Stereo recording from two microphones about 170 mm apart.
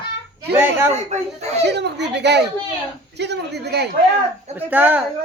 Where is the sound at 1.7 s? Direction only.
90° right.